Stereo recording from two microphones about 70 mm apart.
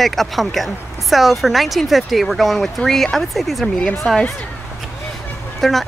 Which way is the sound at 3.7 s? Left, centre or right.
Centre.